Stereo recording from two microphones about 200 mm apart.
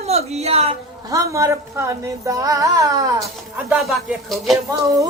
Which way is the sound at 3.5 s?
5° right (ahead or behind).